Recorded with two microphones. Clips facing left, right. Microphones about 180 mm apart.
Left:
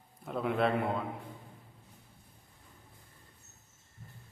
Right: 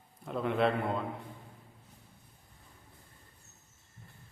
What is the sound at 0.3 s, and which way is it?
Speech, centre (ahead or behind).